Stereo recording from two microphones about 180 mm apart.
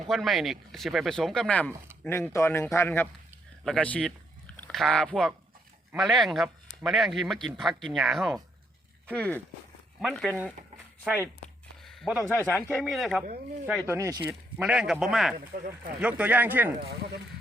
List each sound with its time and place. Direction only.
0.1 s a man's voice: centre (ahead or behind)
10.0 s speech: centre (ahead or behind)
11.9 s a sound: centre (ahead or behind)
12.3 s speech: 10° left (ahead or behind)
13.7 s speech: 10° right (ahead or behind)
14.6 s speech: 5° right (ahead or behind)